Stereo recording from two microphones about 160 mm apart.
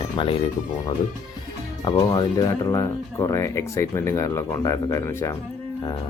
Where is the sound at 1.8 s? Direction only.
20° left (ahead or behind).